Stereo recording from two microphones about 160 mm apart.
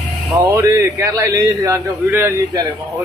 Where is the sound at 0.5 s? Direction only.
20° right (ahead or behind).